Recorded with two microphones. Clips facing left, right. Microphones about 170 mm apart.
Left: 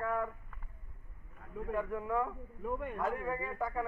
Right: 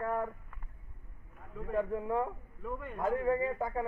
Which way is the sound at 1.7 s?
30° right (ahead or behind).